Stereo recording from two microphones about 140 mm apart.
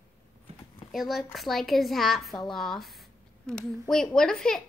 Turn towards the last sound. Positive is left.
turn(degrees=5)  # may be behind; listen again after turning